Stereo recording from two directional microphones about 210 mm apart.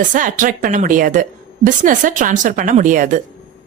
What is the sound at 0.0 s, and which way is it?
A woman's voice, 40° right (ahead or behind).